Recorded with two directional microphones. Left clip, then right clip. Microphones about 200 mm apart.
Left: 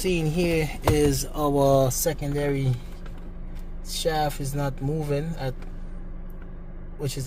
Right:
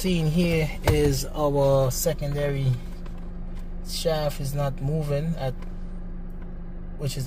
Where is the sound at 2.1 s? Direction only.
15° left (ahead or behind).